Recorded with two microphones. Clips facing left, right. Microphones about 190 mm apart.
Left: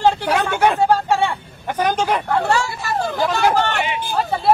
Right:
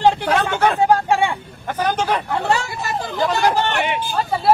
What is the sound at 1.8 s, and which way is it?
Speech, 10° left (ahead or behind).